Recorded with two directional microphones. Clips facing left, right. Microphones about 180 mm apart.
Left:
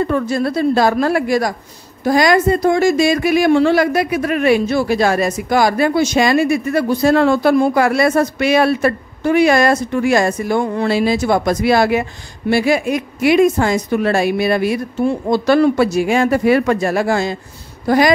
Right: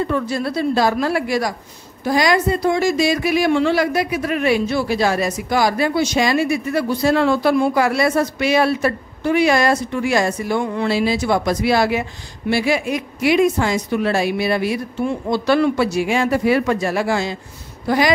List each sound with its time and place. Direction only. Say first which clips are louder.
0.0 s speech: left 4 dB; 50° left (ahead or behind)